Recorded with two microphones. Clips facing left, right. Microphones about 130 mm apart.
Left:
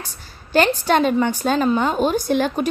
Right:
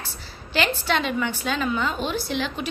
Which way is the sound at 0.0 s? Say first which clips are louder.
Left 1 dB; 45° left (ahead or behind).